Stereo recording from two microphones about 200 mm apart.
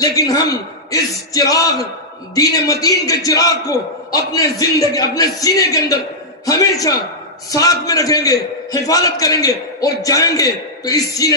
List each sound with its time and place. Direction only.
0.0 s a man's voice: 20° left (ahead or behind)